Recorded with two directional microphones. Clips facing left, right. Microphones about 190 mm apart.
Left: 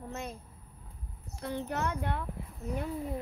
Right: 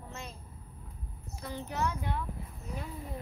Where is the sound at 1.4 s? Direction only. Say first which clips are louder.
Left 1 dB; 55° left (ahead or behind).